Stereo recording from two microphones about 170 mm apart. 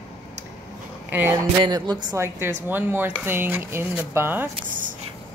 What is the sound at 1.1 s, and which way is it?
Speech, 10° right (ahead or behind).